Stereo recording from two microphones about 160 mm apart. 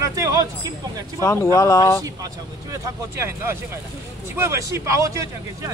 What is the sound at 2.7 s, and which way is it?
Speech, 20° right (ahead or behind).